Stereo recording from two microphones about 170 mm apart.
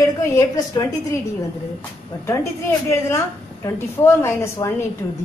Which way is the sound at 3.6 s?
15° left (ahead or behind).